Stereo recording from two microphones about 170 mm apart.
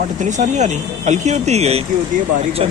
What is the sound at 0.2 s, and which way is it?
Speech, 45° right (ahead or behind).